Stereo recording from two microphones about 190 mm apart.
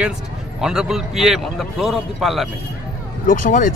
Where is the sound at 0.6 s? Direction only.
5° right (ahead or behind).